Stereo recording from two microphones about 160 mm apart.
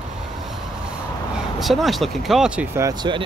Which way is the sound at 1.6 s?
Centre (ahead or behind).